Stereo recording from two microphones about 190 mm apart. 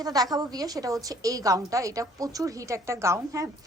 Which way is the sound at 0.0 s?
20° right (ahead or behind).